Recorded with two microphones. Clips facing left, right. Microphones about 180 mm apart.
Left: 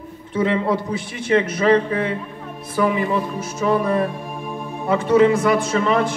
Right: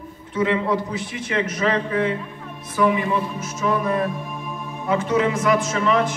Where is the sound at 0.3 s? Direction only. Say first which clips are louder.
Left 1 dB; 30° left (ahead or behind).